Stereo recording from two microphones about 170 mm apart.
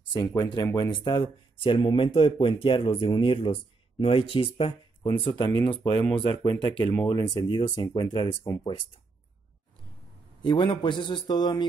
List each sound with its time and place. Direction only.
0.1 s speech: 25° left (ahead or behind)
10.4 s speech: 30° left (ahead or behind)